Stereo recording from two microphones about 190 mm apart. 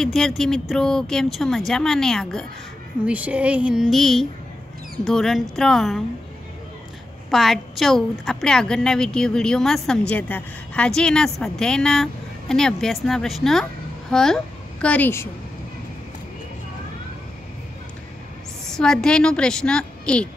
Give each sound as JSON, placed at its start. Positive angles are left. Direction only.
{"t": 0.0, "sound": "a woman's voice", "side_deg": 0}
{"t": 7.2, "sound": "a woman's voice", "side_deg": 0}
{"t": 18.7, "sound": "a woman's voice", "side_deg": 5}